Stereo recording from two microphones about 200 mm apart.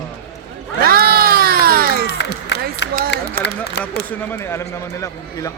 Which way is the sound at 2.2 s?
60° left (ahead or behind).